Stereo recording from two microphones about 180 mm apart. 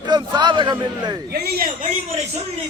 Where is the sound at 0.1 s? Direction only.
25° right (ahead or behind).